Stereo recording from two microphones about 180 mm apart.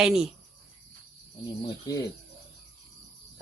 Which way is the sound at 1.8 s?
20° left (ahead or behind).